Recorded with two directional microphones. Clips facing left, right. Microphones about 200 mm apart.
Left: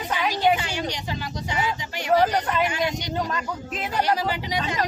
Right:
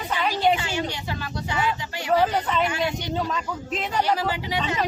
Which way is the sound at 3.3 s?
5° left (ahead or behind).